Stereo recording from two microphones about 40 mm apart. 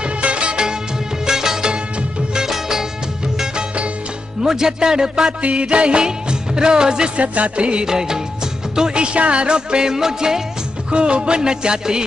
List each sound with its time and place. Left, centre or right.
0.2 s music: right; by 2.8 s centre
4.4 s speech: centre
5.4 s music: right
7.2 s music: right
7.8 s speech: centre
8.7 s music: right
10.9 s music: right